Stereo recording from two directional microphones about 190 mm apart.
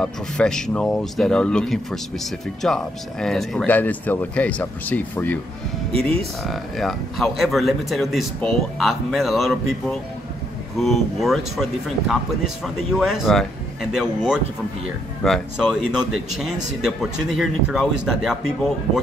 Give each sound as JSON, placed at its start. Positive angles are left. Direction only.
{"t": 0.0, "sound": "speech", "side_deg": 5}